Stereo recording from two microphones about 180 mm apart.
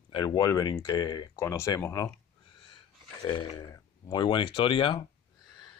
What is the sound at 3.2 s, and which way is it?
Speech, 25° left (ahead or behind).